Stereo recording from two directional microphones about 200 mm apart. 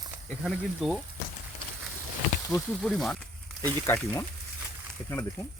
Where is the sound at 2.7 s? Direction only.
5° left (ahead or behind).